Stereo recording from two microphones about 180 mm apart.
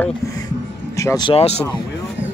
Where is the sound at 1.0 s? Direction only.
20° left (ahead or behind).